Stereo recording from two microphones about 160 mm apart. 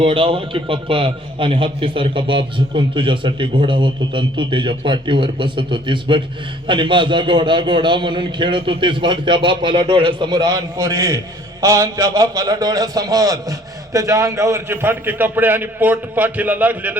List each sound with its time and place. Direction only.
0.0 s a man's voice: 30° right (ahead or behind); by 17.0 s 10° right (ahead or behind)